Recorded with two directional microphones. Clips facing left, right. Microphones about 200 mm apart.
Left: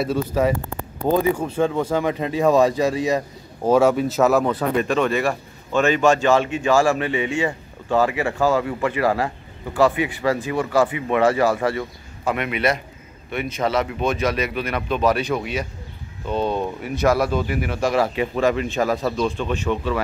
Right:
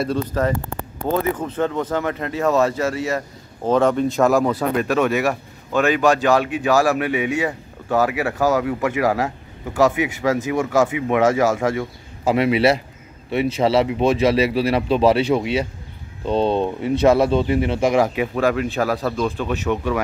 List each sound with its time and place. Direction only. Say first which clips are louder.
0.0 s speech: left 1 dB; 10° left (ahead or behind); by 11.8 s 10° right (ahead or behind)
12.3 s speech: right 6 dB; 30° right (ahead or behind); by 20.0 s 10° right (ahead or behind)